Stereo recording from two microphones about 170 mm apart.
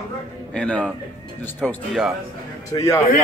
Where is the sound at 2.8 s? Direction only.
15° left (ahead or behind).